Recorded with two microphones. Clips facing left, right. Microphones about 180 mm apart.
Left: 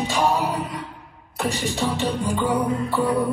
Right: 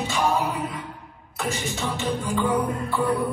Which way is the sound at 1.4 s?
35° left (ahead or behind).